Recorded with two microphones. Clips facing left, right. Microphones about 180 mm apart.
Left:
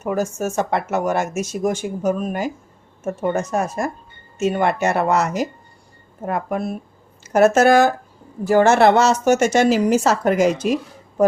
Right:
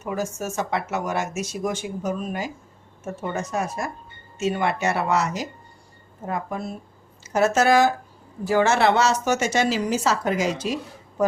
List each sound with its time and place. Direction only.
0.0 s speech: 50° left (ahead or behind)